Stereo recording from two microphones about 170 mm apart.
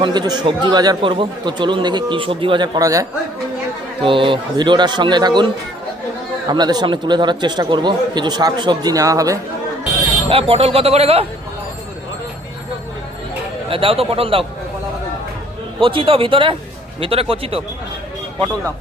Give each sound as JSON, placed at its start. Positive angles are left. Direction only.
{"t": 0.0, "sound": "speech", "side_deg": -25}
{"t": 4.0, "sound": "speech", "side_deg": -30}
{"t": 6.5, "sound": "speech", "side_deg": -25}
{"t": 10.2, "sound": "speech", "side_deg": -35}
{"t": 13.7, "sound": "speech", "side_deg": -30}
{"t": 15.8, "sound": "speech", "side_deg": -30}